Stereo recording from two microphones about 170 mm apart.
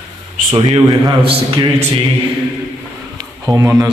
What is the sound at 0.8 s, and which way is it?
Speech, 25° right (ahead or behind).